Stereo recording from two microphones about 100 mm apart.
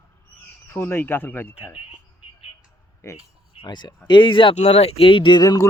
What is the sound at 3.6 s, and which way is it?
Speech, 45° left (ahead or behind).